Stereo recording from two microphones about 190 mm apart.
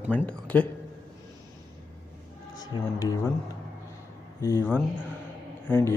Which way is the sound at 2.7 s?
25° left (ahead or behind).